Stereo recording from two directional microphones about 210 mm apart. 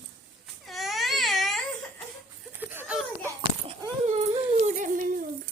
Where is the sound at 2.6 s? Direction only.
5° right (ahead or behind).